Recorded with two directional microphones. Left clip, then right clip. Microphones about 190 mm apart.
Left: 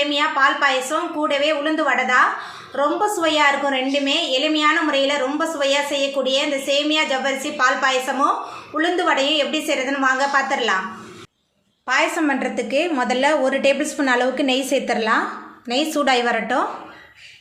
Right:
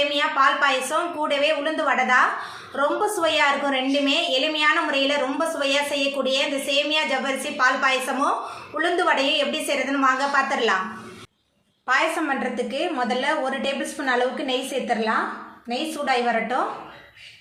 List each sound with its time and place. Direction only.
0.1 s a woman's voice: 10° left (ahead or behind)
11.9 s a woman's voice: 35° left (ahead or behind); by 16.6 s 50° left (ahead or behind)